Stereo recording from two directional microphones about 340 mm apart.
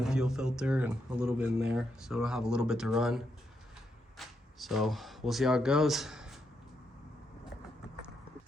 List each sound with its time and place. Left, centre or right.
0.0 s speech: centre